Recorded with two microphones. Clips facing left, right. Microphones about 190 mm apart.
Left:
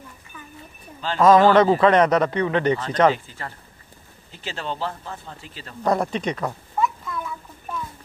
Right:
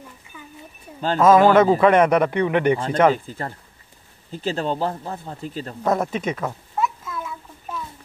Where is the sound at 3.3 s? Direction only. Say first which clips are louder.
Right 5 dB; 35° right (ahead or behind).